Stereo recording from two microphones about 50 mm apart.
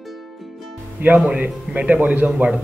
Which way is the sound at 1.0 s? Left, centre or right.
Right.